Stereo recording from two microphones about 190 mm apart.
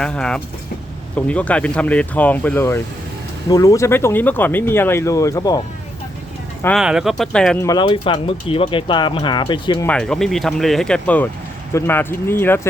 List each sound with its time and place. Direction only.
0.0 s speech: 5° left (ahead or behind)
6.7 s speech: centre (ahead or behind)
7.6 s speech: 20° left (ahead or behind)
9.8 s speech: 5° left (ahead or behind)